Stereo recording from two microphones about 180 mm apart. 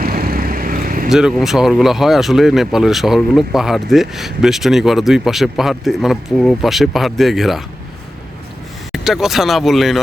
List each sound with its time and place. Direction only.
0.0 s vehicle: 55° right (ahead or behind)
1.1 s speech: centre (ahead or behind)
8.9 s speech: centre (ahead or behind)